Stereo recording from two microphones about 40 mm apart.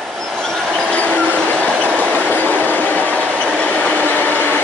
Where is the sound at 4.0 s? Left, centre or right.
Left.